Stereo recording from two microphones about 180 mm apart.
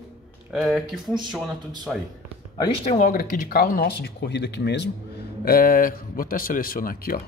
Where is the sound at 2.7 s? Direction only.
40° left (ahead or behind); by 7.2 s 55° left (ahead or behind).